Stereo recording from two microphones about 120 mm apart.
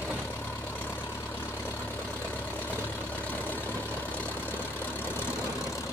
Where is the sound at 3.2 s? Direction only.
15° left (ahead or behind).